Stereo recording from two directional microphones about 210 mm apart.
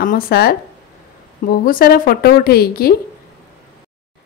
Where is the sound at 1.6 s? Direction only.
45° left (ahead or behind).